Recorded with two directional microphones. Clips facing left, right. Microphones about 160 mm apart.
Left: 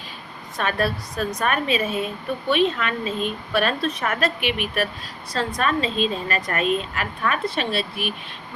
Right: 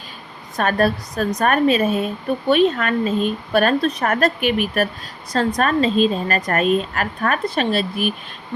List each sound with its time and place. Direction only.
0.5 s a woman's voice: 40° right (ahead or behind)